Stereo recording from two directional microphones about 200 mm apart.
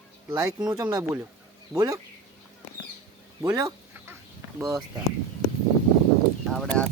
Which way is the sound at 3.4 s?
10° right (ahead or behind).